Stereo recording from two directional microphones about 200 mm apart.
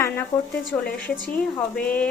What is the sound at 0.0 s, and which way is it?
Speech, 10° left (ahead or behind).